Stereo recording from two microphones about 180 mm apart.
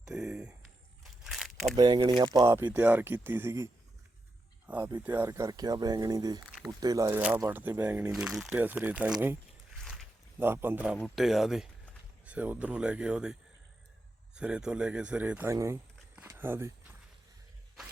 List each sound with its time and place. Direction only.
0.1 s a sound: 5° right (ahead or behind)
1.7 s speech: 25° right (ahead or behind)
4.8 s speech: 15° right (ahead or behind)
7.2 s speech: 10° right (ahead or behind)
9.8 s a sound: centre (ahead or behind)
10.4 s a man's voice: 10° right (ahead or behind)
14.3 s speech: 5° right (ahead or behind)